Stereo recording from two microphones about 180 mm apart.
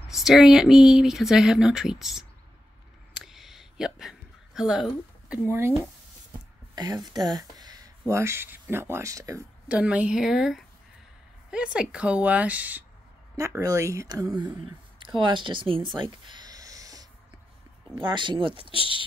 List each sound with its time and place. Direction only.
0.1 s speech: centre (ahead or behind)
3.3 s a sound: centre (ahead or behind)
6.7 s speech: 20° right (ahead or behind)
9.7 s speech: 5° right (ahead or behind); by 18.8 s 30° right (ahead or behind)